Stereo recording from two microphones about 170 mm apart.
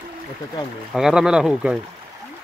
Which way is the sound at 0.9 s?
5° right (ahead or behind).